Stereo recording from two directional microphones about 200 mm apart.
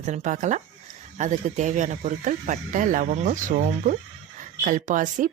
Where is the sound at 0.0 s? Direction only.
35° right (ahead or behind).